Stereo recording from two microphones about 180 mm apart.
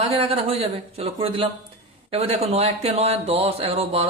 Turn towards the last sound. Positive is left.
turn(degrees=-35)  # may be behind; listen again after turning